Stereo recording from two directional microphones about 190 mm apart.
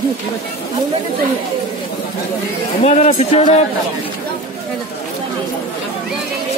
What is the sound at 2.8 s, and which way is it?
Speech, 35° left (ahead or behind).